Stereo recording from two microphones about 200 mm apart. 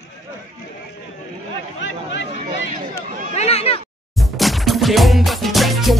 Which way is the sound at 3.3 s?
30° left (ahead or behind).